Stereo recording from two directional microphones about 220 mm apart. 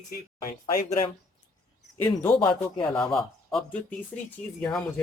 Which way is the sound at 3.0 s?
Centre (ahead or behind).